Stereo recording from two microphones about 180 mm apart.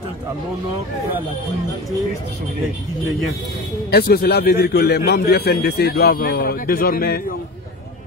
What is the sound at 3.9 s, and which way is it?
A man's voice, 60° left (ahead or behind).